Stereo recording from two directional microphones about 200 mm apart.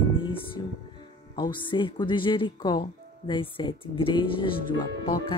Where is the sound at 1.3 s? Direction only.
25° left (ahead or behind).